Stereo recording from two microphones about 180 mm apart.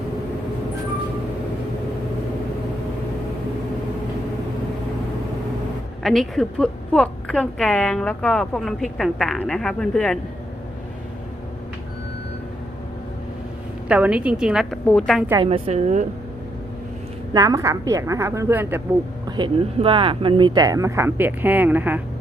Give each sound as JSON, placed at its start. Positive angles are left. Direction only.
{"t": 6.0, "sound": "a woman's voice", "side_deg": 0}
{"t": 13.8, "sound": "a woman's voice", "side_deg": -5}
{"t": 15.4, "sound": "a woman's voice", "side_deg": -30}
{"t": 17.3, "sound": "speech", "side_deg": -20}
{"t": 19.4, "sound": "speech", "side_deg": -30}